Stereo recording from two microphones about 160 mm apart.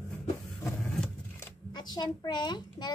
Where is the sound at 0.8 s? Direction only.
5° left (ahead or behind).